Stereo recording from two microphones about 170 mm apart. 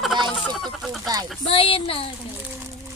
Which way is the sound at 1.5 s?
35° left (ahead or behind).